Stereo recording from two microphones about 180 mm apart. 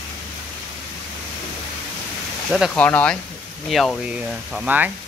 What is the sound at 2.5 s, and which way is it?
Speech, 5° right (ahead or behind).